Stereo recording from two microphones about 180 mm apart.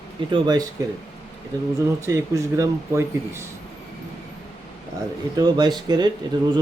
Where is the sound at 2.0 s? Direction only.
15° right (ahead or behind).